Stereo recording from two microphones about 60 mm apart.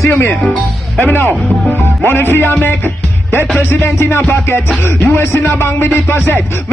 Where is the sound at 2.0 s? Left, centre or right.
Left.